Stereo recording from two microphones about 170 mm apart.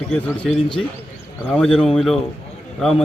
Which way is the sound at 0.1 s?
5° left (ahead or behind).